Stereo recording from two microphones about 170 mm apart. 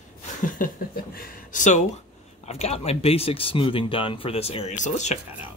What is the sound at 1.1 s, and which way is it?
Speech, 45° left (ahead or behind).